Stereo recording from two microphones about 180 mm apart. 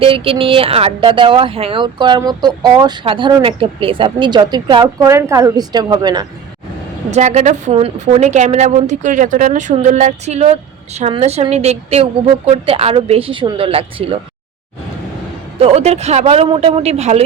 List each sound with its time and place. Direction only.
0.0 s speech: 30° right (ahead or behind)
7.1 s a woman's voice: 40° right (ahead or behind)
15.5 s a woman's voice: 35° right (ahead or behind)